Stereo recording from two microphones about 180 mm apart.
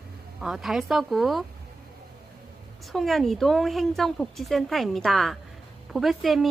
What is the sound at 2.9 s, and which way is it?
Speech, centre (ahead or behind).